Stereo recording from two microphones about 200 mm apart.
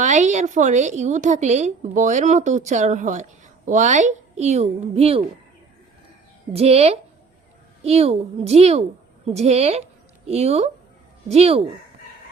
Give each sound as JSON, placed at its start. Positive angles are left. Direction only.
{"t": 0.0, "sound": "a woman's voice", "side_deg": -35}
{"t": 6.5, "sound": "a woman's voice", "side_deg": -30}